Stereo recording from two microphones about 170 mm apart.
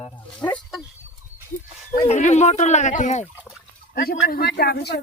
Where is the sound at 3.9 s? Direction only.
65° left (ahead or behind).